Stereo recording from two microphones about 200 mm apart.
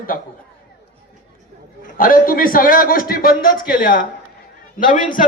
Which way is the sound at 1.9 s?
45° left (ahead or behind).